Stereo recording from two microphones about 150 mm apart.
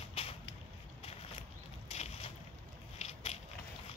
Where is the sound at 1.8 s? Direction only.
45° left (ahead or behind).